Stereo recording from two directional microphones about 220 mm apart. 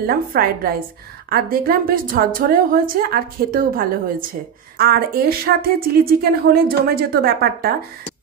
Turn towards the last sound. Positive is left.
turn(degrees=-45)  # may be behind; listen again after turning